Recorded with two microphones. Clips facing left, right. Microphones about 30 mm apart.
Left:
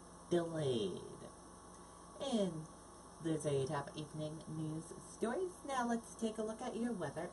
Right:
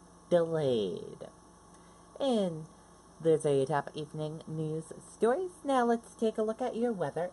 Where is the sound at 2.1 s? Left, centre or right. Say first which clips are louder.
Right 8 dB; right.